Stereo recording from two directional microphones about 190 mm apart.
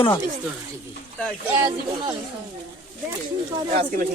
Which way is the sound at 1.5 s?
20° right (ahead or behind).